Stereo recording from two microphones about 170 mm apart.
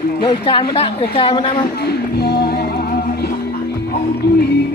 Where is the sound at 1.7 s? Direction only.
70° left (ahead or behind).